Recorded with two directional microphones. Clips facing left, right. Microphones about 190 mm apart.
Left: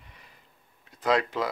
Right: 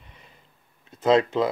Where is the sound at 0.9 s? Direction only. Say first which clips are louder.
Right 6 dB; 25° right (ahead or behind).